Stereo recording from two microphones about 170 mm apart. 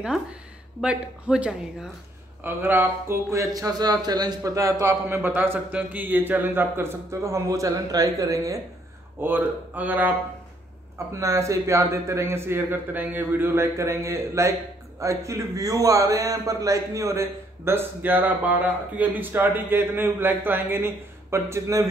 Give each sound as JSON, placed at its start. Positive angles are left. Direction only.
{"t": 0.0, "sound": "a man's voice", "side_deg": -5}